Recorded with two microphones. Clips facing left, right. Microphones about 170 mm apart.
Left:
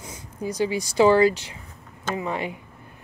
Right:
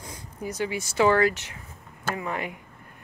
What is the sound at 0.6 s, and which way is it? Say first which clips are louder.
Speech: left 4 dB; 35° left (ahead or behind).